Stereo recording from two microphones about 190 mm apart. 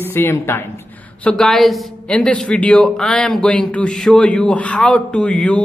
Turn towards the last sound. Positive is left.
turn(degrees=5)  # may be behind; listen again after turning